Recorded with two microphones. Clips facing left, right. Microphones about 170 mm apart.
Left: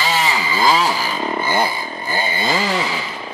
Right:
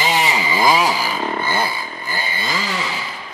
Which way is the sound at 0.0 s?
20° right (ahead or behind).